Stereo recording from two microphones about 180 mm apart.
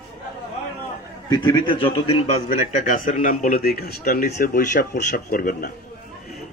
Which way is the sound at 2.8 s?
45° left (ahead or behind).